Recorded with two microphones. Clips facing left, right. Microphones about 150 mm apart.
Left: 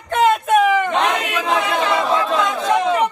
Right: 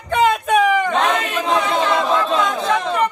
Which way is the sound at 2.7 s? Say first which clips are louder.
Left 2 dB; 10° left (ahead or behind).